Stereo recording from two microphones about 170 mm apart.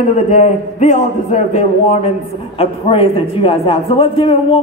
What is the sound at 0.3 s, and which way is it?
A man's voice, 45° left (ahead or behind).